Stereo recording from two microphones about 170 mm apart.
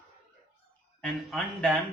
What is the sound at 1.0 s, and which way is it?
Speech, centre (ahead or behind).